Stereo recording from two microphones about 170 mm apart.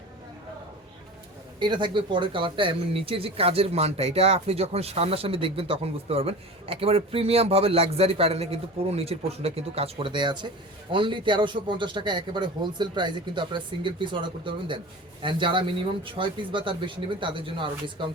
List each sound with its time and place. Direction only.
1.5 s speech: 25° right (ahead or behind)